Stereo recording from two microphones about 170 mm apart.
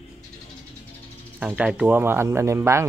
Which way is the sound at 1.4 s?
5° right (ahead or behind).